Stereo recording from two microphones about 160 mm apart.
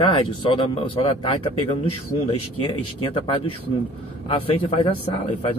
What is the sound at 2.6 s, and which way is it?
Speech, 35° left (ahead or behind).